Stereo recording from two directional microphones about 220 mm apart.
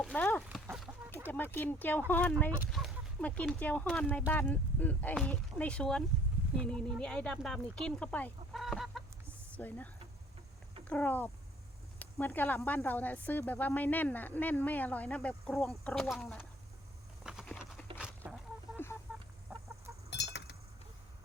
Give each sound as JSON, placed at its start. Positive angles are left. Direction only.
{"t": 0.0, "sound": "chicken", "side_deg": 5}
{"t": 0.4, "sound": "speech", "side_deg": -5}
{"t": 17.2, "sound": "a sound", "side_deg": 0}
{"t": 19.5, "sound": "chicken", "side_deg": -10}
{"t": 20.1, "sound": "chink", "side_deg": 50}